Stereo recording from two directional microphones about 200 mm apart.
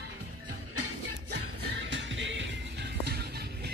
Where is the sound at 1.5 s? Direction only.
60° right (ahead or behind).